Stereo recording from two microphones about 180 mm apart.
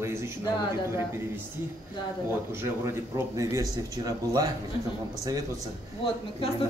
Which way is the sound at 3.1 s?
20° right (ahead or behind).